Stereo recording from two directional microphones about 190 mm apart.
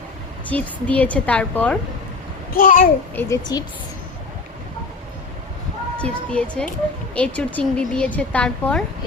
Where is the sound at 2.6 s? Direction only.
45° left (ahead or behind).